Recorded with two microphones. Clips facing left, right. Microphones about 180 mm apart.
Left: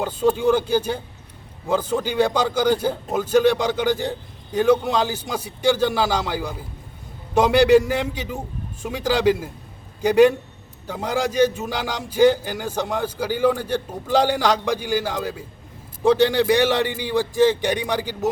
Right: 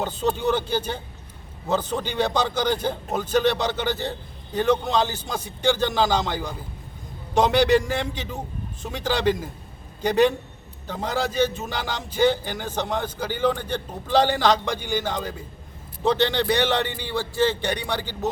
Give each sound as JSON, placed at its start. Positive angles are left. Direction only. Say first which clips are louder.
{"t": 0.0, "sound": "a man's voice", "louder": "left 5 dB", "side_deg": 10}